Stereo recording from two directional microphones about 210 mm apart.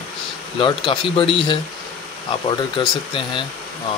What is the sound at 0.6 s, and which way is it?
Speech, 20° left (ahead or behind).